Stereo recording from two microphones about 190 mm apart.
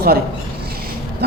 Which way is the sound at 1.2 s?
55° right (ahead or behind).